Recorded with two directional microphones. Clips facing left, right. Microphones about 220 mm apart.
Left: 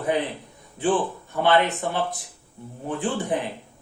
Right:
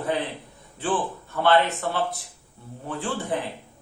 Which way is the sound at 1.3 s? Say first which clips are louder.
Even; 15° left (ahead or behind).